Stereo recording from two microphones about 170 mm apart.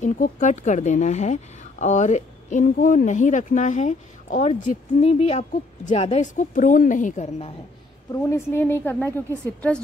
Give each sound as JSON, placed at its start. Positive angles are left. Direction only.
{"t": 0.0, "sound": "speech", "side_deg": 50}
{"t": 8.1, "sound": "a woman's voice", "side_deg": 15}